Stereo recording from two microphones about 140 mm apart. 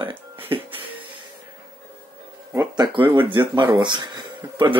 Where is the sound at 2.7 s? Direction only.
35° right (ahead or behind).